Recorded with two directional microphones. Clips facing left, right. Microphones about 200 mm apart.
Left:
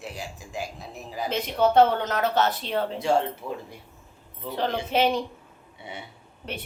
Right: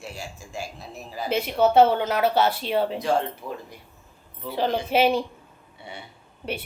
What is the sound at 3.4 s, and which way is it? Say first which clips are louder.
Speech: left 1 dB; 5° left (ahead or behind).